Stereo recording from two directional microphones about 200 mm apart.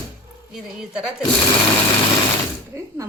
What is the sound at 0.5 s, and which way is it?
Speech, 5° right (ahead or behind).